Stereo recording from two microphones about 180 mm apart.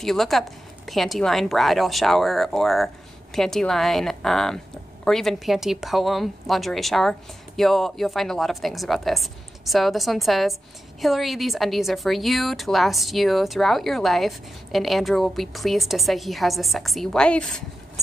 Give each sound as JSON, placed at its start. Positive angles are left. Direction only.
{"t": 0.0, "sound": "a woman's voice", "side_deg": 0}